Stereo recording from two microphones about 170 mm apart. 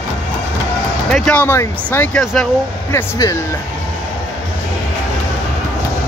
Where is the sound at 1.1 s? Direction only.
5° left (ahead or behind).